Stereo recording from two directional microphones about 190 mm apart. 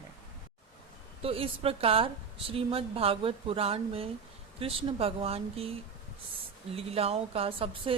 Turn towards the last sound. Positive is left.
turn(degrees=-30)  # may be behind; listen again after turning